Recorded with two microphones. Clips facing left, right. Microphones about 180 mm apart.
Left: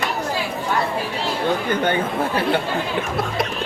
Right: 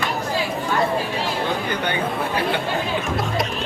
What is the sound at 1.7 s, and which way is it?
Chatter, 50° left (ahead or behind).